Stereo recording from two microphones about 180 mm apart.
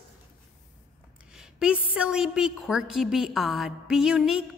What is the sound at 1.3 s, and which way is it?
A woman's voice, 5° right (ahead or behind).